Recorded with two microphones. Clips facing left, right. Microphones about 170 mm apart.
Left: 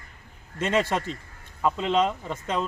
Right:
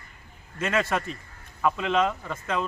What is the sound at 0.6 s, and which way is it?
Speech, 30° left (ahead or behind).